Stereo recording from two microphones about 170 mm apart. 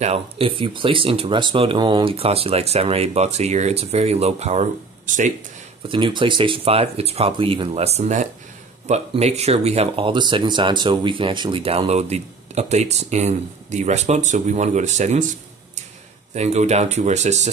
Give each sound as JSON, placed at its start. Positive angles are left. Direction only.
{"t": 0.0, "sound": "speech", "side_deg": -35}
{"t": 5.9, "sound": "speech", "side_deg": -30}
{"t": 16.3, "sound": "speech", "side_deg": -40}